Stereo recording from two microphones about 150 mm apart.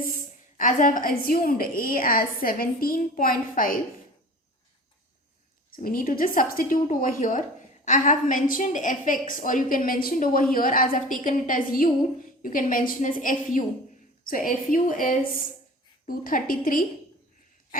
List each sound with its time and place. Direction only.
0.0 s a woman's voice: 65° left (ahead or behind)
5.8 s a woman's voice: 70° left (ahead or behind)